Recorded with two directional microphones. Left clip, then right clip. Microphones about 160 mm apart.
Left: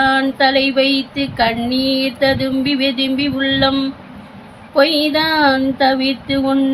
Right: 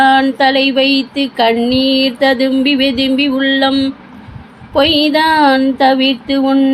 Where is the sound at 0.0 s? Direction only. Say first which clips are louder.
Right 4 dB; 20° right (ahead or behind).